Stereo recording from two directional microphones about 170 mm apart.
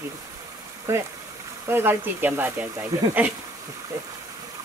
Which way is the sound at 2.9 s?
20° right (ahead or behind).